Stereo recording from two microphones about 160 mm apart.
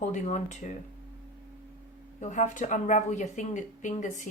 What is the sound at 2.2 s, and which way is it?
Speech, 50° left (ahead or behind).